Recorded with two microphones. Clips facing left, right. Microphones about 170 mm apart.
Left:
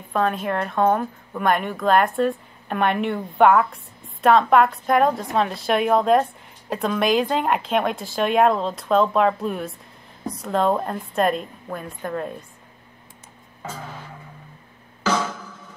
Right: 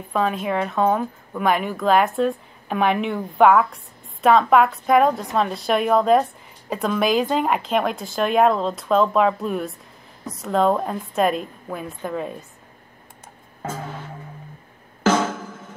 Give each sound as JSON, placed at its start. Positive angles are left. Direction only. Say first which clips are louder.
{"t": 0.1, "sound": "a woman's voice", "louder": "even", "side_deg": 0}
{"t": 13.6, "sound": "music", "louder": "right 4 dB", "side_deg": -45}
{"t": 15.0, "sound": "drum", "louder": "right 4 dB", "side_deg": -50}